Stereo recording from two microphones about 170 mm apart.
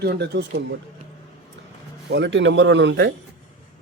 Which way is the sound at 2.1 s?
90° right.